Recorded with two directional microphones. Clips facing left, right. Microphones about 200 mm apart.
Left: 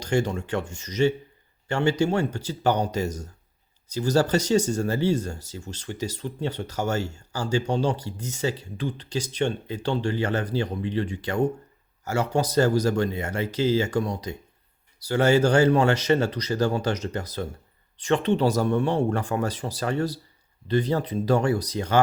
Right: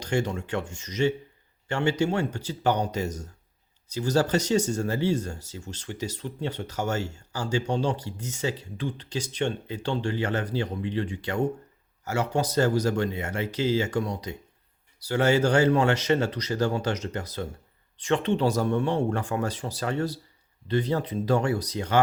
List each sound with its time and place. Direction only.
0.0 s speech: 40° left (ahead or behind)